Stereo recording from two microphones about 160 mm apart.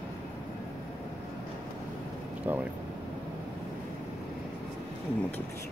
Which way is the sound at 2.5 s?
10° right (ahead or behind).